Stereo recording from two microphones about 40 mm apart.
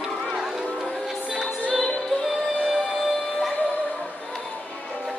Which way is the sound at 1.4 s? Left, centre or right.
Centre.